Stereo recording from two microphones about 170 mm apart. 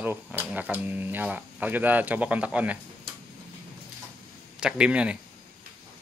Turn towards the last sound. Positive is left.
turn(degrees=-5)  # may be behind; listen again after turning